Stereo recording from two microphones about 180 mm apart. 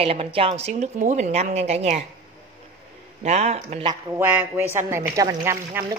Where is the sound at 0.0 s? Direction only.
30° right (ahead or behind).